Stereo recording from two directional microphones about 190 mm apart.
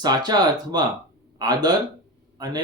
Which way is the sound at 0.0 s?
20° right (ahead or behind).